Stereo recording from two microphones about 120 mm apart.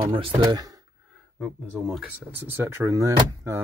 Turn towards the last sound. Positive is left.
turn(degrees=-25)  # may be behind; listen again after turning